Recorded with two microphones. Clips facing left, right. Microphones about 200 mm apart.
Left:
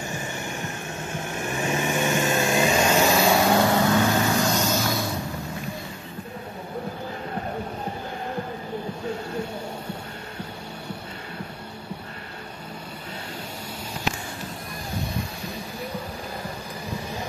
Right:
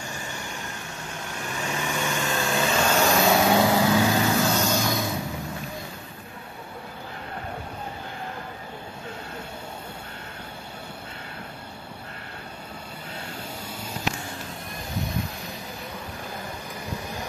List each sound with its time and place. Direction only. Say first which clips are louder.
0.1 s vehicle: left 4 dB; 20° left (ahead or behind); by 5.1 s centre (ahead or behind)